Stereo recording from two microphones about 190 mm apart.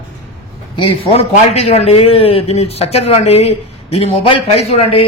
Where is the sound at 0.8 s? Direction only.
30° left (ahead or behind).